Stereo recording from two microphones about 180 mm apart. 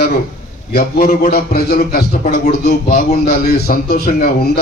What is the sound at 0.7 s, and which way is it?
A man's voice, 50° left (ahead or behind).